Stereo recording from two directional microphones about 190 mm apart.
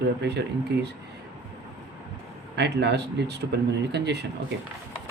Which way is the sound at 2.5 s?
65° right (ahead or behind).